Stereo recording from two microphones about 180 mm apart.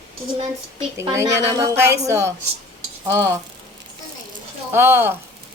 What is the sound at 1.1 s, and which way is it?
Speech, 15° right (ahead or behind).